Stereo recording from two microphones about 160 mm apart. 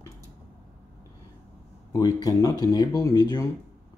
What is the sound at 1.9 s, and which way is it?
Speech, 25° left (ahead or behind).